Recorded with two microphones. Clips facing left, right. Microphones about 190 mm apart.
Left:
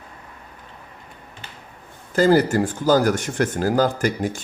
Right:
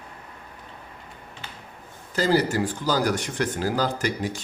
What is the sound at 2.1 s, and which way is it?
Speech, 50° left (ahead or behind).